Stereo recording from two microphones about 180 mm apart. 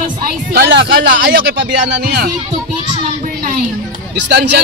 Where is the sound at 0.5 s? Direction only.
75° right (ahead or behind).